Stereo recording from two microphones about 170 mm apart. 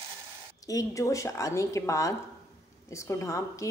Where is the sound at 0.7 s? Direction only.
20° left (ahead or behind).